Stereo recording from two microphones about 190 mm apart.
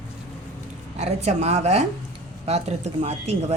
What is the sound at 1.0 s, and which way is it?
Speech, 35° right (ahead or behind).